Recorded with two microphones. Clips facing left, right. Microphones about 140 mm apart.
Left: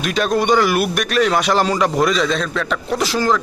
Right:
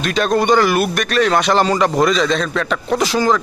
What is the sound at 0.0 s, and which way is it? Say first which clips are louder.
A man's voice: right 2 dB; 5° left (ahead or behind).